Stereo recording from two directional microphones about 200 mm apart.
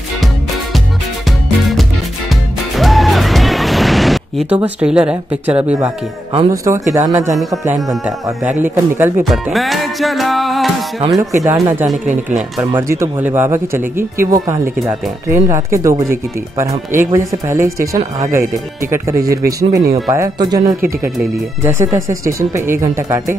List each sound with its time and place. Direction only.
2.7 s music: centre (ahead or behind)
4.6 s speech: 5° right (ahead or behind)
8.5 s speech: 10° right (ahead or behind)
9.2 s music: centre (ahead or behind)
11.4 s speech: 10° right (ahead or behind)